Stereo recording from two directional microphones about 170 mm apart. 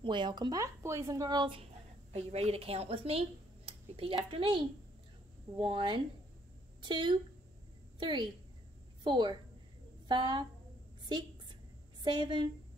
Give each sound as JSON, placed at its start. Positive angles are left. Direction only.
{"t": 0.0, "sound": "speech", "side_deg": -25}
{"t": 5.6, "sound": "a woman's voice", "side_deg": -30}
{"t": 12.0, "sound": "a woman's voice", "side_deg": -25}